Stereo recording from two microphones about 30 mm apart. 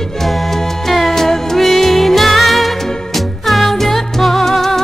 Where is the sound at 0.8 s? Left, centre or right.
Centre.